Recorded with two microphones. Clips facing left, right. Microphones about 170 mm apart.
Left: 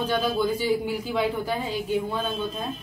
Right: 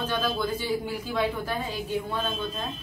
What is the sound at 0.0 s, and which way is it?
A woman's voice, 15° left (ahead or behind).